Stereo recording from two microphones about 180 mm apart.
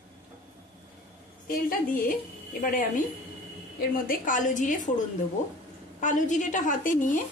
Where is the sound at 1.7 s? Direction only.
50° left (ahead or behind).